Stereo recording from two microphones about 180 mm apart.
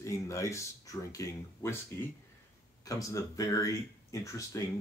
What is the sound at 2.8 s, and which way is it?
Speech, 20° left (ahead or behind).